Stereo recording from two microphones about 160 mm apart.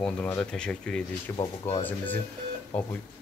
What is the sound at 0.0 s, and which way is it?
Speech, 10° left (ahead or behind).